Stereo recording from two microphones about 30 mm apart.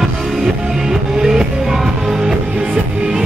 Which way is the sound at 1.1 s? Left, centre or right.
Centre.